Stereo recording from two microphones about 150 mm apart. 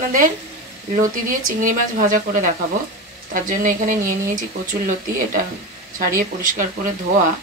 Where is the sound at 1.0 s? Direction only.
65° right (ahead or behind).